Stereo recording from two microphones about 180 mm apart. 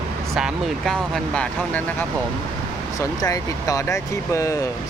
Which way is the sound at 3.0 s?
20° left (ahead or behind).